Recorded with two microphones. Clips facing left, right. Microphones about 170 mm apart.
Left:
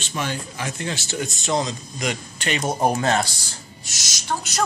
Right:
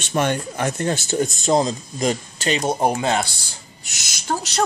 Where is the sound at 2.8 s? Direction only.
15° right (ahead or behind).